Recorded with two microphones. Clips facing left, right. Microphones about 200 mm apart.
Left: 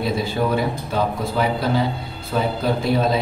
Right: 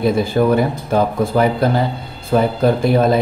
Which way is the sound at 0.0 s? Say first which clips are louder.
Right 7 dB; 50° right (ahead or behind).